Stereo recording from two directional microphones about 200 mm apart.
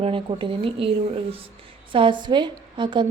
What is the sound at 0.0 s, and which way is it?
Speech, 25° right (ahead or behind).